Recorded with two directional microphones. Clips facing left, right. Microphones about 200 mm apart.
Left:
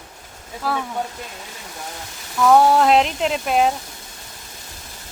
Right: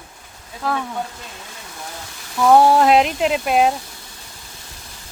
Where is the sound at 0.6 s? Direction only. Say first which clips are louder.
Right 1 dB; 5° left (ahead or behind).